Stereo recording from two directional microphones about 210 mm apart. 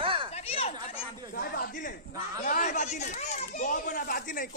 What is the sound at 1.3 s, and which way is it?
A child's voice, 45° left (ahead or behind).